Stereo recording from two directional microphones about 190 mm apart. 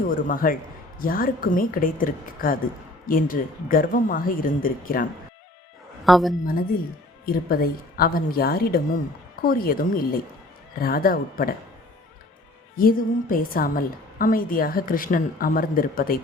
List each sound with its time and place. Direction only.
0.1 s a woman's voice: 45° left (ahead or behind)
6.1 s a woman's voice: centre (ahead or behind)
7.3 s a woman's voice: 50° left (ahead or behind)
12.7 s a woman's voice: 50° left (ahead or behind)